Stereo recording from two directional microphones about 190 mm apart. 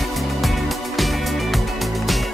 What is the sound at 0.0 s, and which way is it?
Music, centre (ahead or behind).